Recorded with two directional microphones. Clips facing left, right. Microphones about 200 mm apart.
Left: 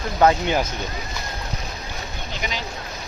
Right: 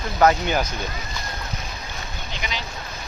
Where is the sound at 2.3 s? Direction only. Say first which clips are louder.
Left 2 dB; 45° left (ahead or behind).